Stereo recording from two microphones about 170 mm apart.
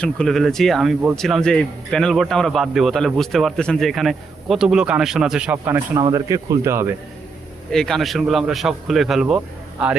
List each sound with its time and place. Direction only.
0.0 s speech: 5° left (ahead or behind); by 6.0 s 10° right (ahead or behind)
6.0 s speech: 20° right (ahead or behind)
7.7 s speech: 5° left (ahead or behind)